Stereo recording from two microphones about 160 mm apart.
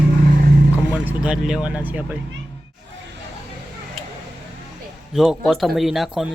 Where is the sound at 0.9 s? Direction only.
5° right (ahead or behind).